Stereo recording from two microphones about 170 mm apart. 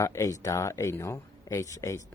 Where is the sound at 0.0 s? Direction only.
20° left (ahead or behind).